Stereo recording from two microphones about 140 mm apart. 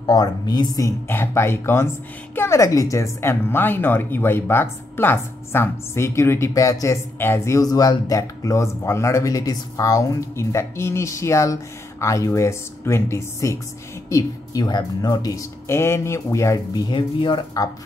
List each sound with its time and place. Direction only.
0.0 s speech: 30° left (ahead or behind)
16.9 s speech: 35° left (ahead or behind)